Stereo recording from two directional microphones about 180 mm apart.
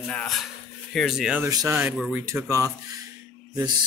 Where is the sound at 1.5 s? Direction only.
20° right (ahead or behind).